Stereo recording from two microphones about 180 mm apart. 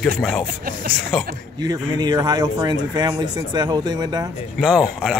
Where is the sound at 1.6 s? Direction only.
20° right (ahead or behind).